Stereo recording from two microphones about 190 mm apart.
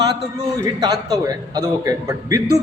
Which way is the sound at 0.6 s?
20° right (ahead or behind).